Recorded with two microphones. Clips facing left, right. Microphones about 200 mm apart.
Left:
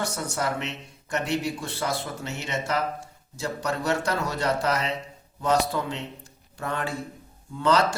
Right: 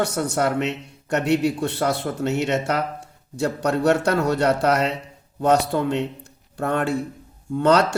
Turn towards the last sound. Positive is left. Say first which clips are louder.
# right 5 dB
turn(degrees=-65)  # may be behind; listen again after turning